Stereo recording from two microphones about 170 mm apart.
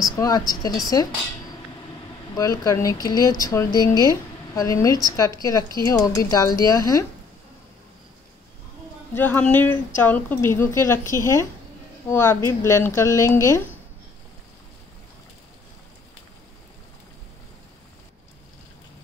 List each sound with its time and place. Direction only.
0.1 s speech: 20° left (ahead or behind)
2.3 s speech: 20° left (ahead or behind)
9.1 s speech: 10° left (ahead or behind)